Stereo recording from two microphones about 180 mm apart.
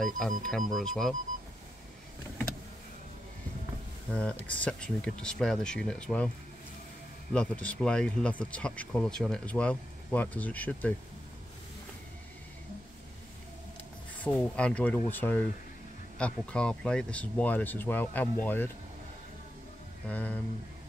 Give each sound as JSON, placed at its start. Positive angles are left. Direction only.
{"t": 0.0, "sound": "speech", "side_deg": 0}
{"t": 4.1, "sound": "speech", "side_deg": 5}
{"t": 7.3, "sound": "speech", "side_deg": 5}
{"t": 14.1, "sound": "speech", "side_deg": 5}
{"t": 20.1, "sound": "speech", "side_deg": 10}